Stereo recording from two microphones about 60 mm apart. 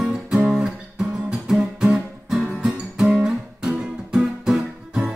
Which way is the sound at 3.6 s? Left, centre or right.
Centre.